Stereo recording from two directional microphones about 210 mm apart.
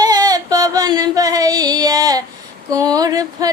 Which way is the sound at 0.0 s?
20° right (ahead or behind).